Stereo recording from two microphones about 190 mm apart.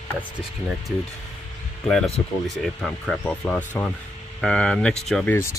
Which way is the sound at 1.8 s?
Centre (ahead or behind).